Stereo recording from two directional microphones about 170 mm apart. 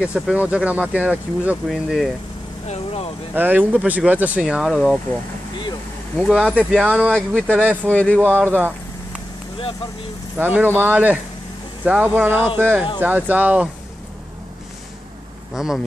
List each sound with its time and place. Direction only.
0.0 s speech: 5° right (ahead or behind)
2.7 s vehicle: 35° left (ahead or behind)
3.3 s speech: 10° right (ahead or behind)
6.1 s speech: centre (ahead or behind)
7.9 s speech: 10° left (ahead or behind)
8.4 s speech: 10° right (ahead or behind)
10.3 s speech: 10° right (ahead or behind)
15.5 s speech: 5° right (ahead or behind)